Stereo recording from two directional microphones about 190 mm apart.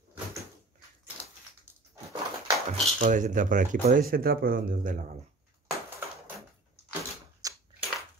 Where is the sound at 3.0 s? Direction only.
40° right (ahead or behind).